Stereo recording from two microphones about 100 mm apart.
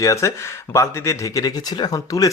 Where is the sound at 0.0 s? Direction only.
30° left (ahead or behind).